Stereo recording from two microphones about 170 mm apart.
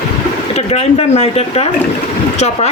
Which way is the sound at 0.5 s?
35° left (ahead or behind).